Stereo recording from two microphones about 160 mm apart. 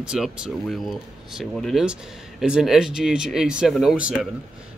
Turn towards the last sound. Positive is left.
turn(degrees=-5)  # may be behind; listen again after turning